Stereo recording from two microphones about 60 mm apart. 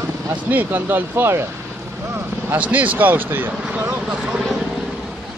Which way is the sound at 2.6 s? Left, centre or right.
Right.